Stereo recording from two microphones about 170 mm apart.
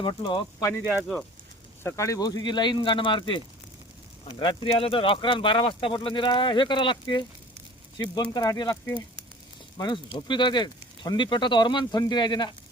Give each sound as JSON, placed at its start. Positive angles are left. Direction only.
{"t": 0.0, "sound": "speech", "side_deg": 30}
{"t": 1.8, "sound": "speech", "side_deg": 15}
{"t": 9.7, "sound": "speech", "side_deg": 25}